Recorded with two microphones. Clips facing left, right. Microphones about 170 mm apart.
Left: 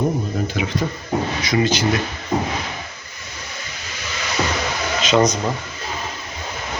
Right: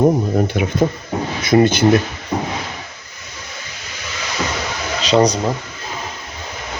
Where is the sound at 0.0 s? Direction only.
50° right (ahead or behind).